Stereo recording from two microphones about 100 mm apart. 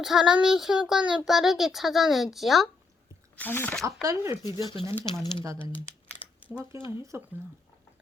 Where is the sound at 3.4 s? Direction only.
20° left (ahead or behind).